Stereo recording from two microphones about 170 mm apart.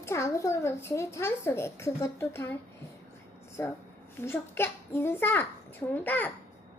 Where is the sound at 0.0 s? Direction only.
15° left (ahead or behind).